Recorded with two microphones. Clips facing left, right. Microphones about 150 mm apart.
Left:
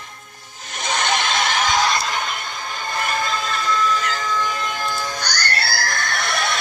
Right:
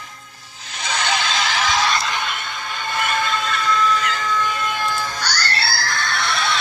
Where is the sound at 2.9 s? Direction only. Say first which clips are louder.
Right 1 dB; 40° left (ahead or behind).